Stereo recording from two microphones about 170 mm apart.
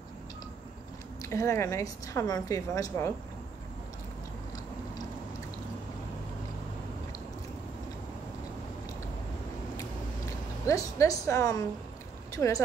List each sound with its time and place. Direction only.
1.2 s a woman's voice: 15° left (ahead or behind)
10.7 s a woman's voice: 20° left (ahead or behind)